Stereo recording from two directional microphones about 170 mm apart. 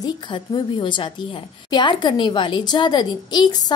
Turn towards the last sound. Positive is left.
turn(degrees=25)  # may be behind; listen again after turning